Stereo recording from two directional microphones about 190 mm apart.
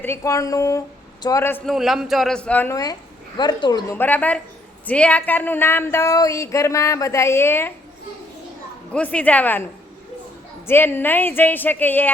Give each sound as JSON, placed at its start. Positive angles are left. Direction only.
{"t": 0.0, "sound": "speech", "side_deg": 15}
{"t": 1.6, "sound": "a woman's voice", "side_deg": 0}
{"t": 3.9, "sound": "speech", "side_deg": 10}
{"t": 8.9, "sound": "speech", "side_deg": 5}
{"t": 10.7, "sound": "speech", "side_deg": 10}